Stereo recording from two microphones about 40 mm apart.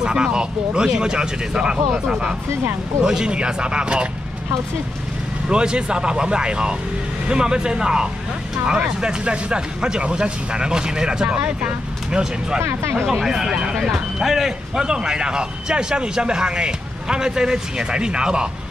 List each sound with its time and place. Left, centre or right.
0.0 s speech: right
3.0 s speech: centre
5.5 s speech: right
11.2 s speech: right
12.1 s speech: centre
13.0 s speech: centre
13.3 s speech: centre
13.7 s speech: centre; by 18.5 s right